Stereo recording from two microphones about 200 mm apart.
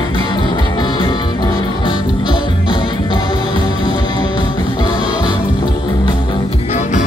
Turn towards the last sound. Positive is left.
turn(degrees=35)  # may be behind; listen again after turning